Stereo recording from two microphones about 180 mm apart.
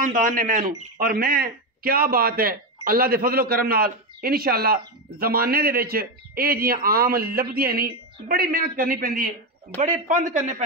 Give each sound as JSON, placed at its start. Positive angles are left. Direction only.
{"t": 0.0, "sound": "a man's voice", "side_deg": -45}